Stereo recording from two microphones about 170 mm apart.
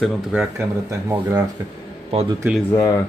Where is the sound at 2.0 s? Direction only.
35° right (ahead or behind).